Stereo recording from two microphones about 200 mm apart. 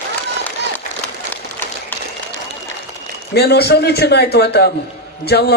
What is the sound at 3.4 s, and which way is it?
A man's voice, 55° left (ahead or behind).